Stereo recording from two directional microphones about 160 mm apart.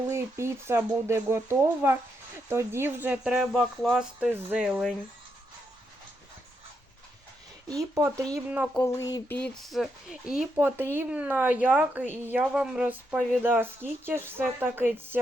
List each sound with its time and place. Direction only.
0.1 s speech: 15° right (ahead or behind)
3.5 s speech: 5° left (ahead or behind)
4.3 s speech: 15° right (ahead or behind)
7.7 s speech: 20° right (ahead or behind)
8.4 s speech: 10° right (ahead or behind)
8.8 s a sound: 20° left (ahead or behind)
9.3 s speech: 5° left (ahead or behind); by 14.8 s 15° right (ahead or behind)